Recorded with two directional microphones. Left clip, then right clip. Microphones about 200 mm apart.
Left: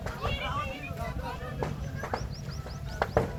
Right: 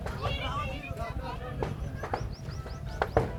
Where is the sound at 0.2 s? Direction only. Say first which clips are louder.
Left 1 dB; 55° right (ahead or behind).